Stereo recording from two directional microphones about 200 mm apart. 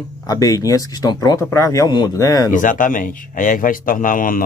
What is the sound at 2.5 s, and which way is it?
A man's voice, 40° left (ahead or behind).